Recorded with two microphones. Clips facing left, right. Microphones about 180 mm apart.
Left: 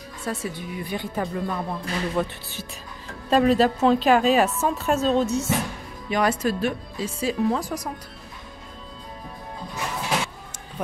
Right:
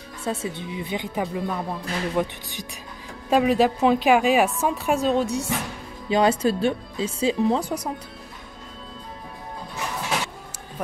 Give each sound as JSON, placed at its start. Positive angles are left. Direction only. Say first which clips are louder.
{"t": 0.3, "sound": "speech", "louder": "right 2 dB", "side_deg": -25}
{"t": 1.2, "sound": "a woman's voice", "louder": "even", "side_deg": -5}
{"t": 6.0, "sound": "speech", "louder": "right 3 dB", "side_deg": -30}